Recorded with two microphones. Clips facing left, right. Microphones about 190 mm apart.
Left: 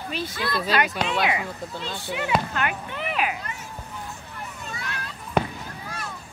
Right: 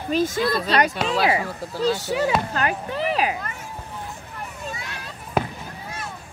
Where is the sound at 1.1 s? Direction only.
35° right (ahead or behind).